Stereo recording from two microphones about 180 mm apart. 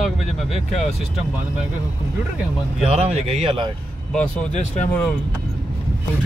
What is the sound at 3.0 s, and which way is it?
Speech, 35° right (ahead or behind).